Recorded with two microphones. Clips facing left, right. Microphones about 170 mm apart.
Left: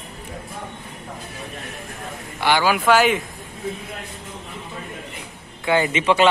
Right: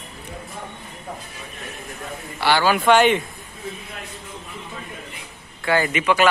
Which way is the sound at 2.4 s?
15° left (ahead or behind).